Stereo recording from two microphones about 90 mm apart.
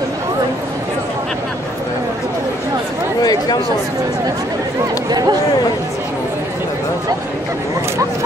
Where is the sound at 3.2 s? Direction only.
50° left (ahead or behind).